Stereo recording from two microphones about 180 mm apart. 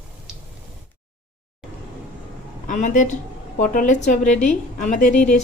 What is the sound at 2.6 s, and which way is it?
A woman's voice, 45° left (ahead or behind).